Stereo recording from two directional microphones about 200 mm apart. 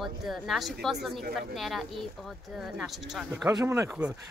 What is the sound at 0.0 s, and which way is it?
A woman's voice, centre (ahead or behind).